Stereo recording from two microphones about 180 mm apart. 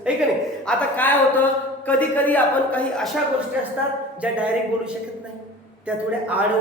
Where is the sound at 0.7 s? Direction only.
10° left (ahead or behind).